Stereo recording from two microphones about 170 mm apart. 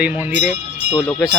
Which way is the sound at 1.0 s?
5° left (ahead or behind).